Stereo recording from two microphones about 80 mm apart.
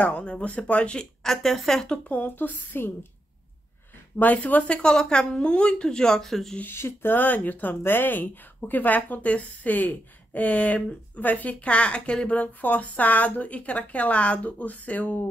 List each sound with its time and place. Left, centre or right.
0.0 s speech: centre
4.2 s speech: centre
6.6 s speech: left